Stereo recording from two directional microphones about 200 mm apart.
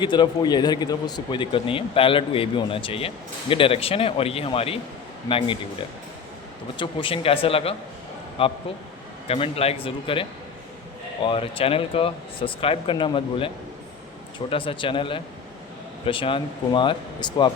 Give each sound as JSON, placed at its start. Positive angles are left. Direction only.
{"t": 0.0, "sound": "a man's voice", "side_deg": 20}
{"t": 6.7, "sound": "a man's voice", "side_deg": 25}